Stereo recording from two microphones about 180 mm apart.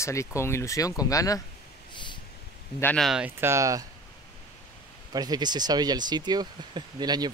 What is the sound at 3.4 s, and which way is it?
Speech, 15° right (ahead or behind).